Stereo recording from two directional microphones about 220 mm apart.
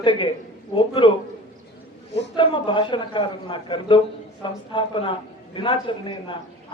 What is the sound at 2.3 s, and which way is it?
A man's voice, 20° left (ahead or behind).